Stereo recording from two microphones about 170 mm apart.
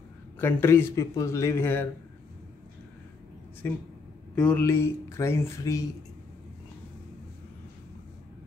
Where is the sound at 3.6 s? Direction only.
15° left (ahead or behind).